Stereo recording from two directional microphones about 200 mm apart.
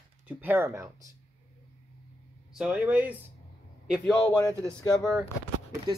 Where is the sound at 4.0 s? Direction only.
5° left (ahead or behind).